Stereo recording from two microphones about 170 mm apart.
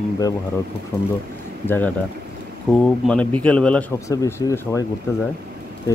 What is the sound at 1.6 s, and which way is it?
A man's voice, 10° left (ahead or behind).